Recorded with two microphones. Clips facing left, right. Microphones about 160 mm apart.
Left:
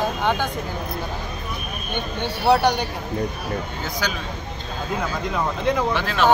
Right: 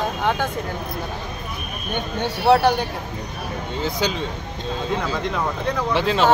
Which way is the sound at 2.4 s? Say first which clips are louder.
Right 2 dB; 5° right (ahead or behind).